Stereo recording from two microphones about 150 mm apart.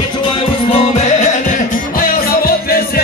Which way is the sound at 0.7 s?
45° left (ahead or behind).